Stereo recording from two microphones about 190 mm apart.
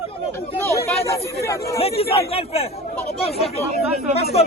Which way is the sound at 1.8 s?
30° left (ahead or behind).